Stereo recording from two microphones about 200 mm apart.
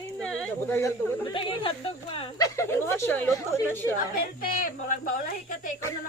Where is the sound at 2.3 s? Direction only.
15° left (ahead or behind).